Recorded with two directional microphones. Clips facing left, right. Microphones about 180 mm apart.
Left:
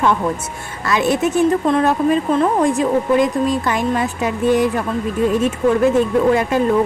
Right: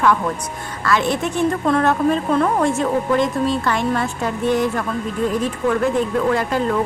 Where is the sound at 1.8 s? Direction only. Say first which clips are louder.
Left 2 dB; 10° left (ahead or behind).